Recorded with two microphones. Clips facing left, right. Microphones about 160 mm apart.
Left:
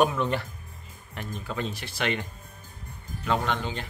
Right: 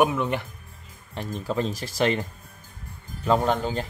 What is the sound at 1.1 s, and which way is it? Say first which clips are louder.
Speech: right 6 dB; 35° right (ahead or behind).